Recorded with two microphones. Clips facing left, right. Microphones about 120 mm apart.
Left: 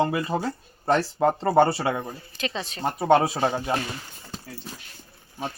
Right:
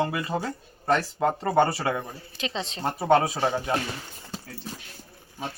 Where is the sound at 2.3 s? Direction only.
20° right (ahead or behind).